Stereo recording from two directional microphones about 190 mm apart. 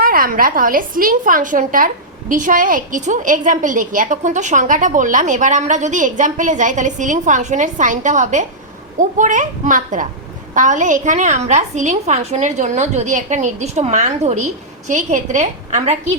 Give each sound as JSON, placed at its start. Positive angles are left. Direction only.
{"t": 0.0, "sound": "a woman's voice", "side_deg": -50}